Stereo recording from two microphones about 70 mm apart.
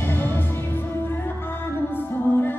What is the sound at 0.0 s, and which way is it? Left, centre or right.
Music, left.